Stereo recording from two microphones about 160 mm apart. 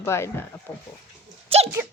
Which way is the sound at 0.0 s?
15° left (ahead or behind).